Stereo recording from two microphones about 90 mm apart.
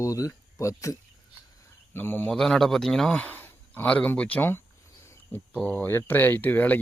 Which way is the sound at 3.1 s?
20° left (ahead or behind).